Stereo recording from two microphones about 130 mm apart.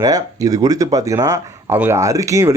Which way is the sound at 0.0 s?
30° right (ahead or behind).